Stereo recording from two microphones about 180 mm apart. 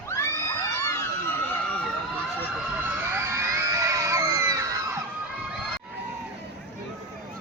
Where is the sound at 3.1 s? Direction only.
15° right (ahead or behind).